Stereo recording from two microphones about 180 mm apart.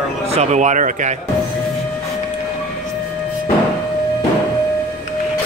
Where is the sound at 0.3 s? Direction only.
40° right (ahead or behind).